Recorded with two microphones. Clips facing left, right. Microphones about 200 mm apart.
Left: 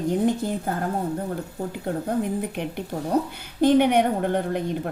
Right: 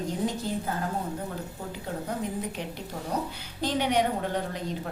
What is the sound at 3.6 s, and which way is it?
A woman's voice, 55° left (ahead or behind).